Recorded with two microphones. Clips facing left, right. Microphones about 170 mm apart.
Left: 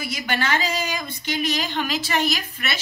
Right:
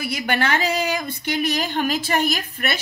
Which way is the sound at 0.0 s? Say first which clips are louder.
Right 3 dB; 55° right (ahead or behind).